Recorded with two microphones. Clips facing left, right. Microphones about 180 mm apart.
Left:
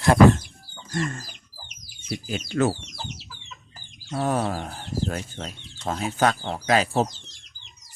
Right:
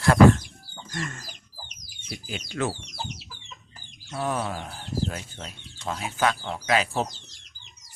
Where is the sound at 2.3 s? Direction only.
40° left (ahead or behind).